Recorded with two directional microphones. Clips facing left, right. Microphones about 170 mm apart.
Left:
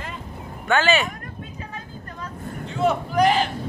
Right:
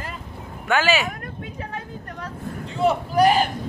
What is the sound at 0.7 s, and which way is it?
Speech, 5° right (ahead or behind).